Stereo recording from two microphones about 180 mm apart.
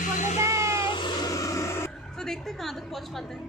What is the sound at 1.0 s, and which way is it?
Vehicle, 20° left (ahead or behind).